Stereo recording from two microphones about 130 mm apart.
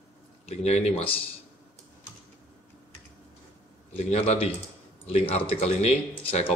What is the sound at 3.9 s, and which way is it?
Speech, 55° left (ahead or behind).